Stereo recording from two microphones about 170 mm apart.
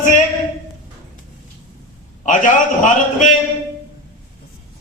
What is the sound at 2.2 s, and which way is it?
Speech, 45° left (ahead or behind).